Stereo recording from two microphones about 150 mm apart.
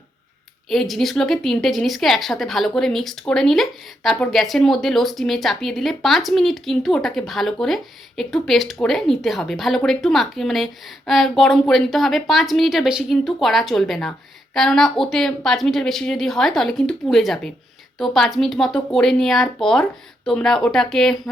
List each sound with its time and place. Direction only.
0.7 s a woman's voice: centre (ahead or behind)